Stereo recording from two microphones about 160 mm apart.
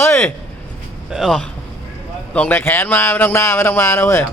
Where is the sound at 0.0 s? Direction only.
15° left (ahead or behind).